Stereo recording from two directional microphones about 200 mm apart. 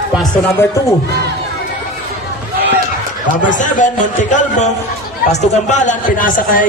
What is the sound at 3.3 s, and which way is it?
A man's voice, 40° left (ahead or behind).